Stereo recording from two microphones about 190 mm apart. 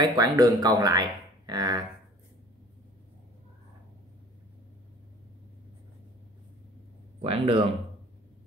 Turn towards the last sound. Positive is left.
turn(degrees=-30)  # may be behind; listen again after turning